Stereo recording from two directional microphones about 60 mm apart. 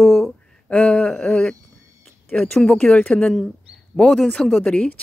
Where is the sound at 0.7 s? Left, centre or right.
Centre.